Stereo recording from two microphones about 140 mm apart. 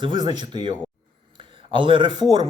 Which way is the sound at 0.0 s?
30° right (ahead or behind).